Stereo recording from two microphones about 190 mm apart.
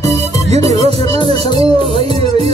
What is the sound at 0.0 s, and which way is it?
Music, 35° right (ahead or behind).